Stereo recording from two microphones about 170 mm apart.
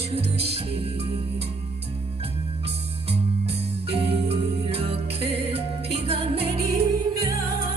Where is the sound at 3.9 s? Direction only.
35° right (ahead or behind).